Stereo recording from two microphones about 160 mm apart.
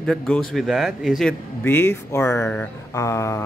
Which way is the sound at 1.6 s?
15° left (ahead or behind).